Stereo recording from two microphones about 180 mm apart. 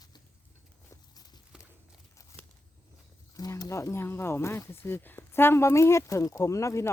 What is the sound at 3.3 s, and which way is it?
Speech, 20° left (ahead or behind).